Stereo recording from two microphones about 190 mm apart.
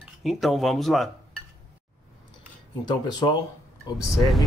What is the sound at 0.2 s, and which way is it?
Speech, centre (ahead or behind).